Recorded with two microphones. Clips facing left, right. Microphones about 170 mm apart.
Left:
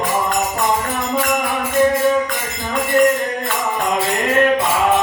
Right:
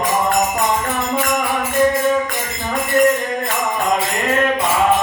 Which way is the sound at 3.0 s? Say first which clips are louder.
Even; 45° right (ahead or behind).